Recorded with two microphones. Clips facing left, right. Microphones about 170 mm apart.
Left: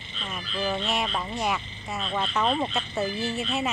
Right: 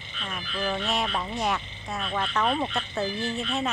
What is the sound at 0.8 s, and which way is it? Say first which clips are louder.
Speech: even; centre (ahead or behind).